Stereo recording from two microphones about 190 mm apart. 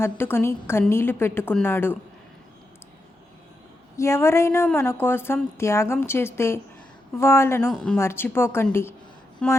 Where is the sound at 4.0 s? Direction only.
15° left (ahead or behind).